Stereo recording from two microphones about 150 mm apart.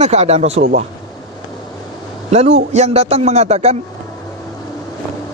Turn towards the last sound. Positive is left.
turn(degrees=-45)  # may be behind; listen again after turning